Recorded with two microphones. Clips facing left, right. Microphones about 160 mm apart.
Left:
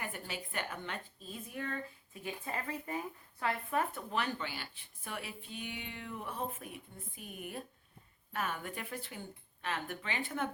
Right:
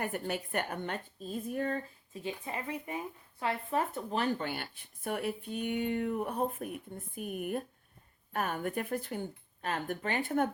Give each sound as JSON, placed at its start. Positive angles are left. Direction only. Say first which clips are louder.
{"t": 0.0, "sound": "speech", "louder": "right 8 dB", "side_deg": -55}
{"t": 2.2, "sound": "speech", "louder": "right 2 dB", "side_deg": -20}